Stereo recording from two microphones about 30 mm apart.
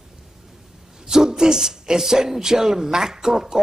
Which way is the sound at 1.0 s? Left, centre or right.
Centre.